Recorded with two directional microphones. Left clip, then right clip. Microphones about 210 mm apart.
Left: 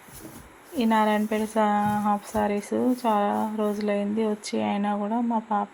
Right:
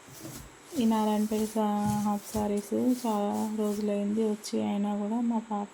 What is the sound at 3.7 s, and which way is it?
Speech, 5° left (ahead or behind).